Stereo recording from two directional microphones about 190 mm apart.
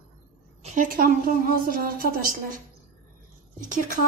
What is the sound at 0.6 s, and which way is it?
A woman's voice, 40° right (ahead or behind).